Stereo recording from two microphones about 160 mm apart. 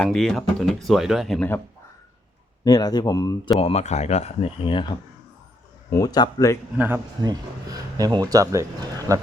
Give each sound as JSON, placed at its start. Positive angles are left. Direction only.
{"t": 0.0, "sound": "speech", "side_deg": 5}
{"t": 2.6, "sound": "speech", "side_deg": 25}
{"t": 3.6, "sound": "speech", "side_deg": 40}
{"t": 5.9, "sound": "speech", "side_deg": 25}
{"t": 6.7, "sound": "speech", "side_deg": -10}
{"t": 7.2, "sound": "speech", "side_deg": -25}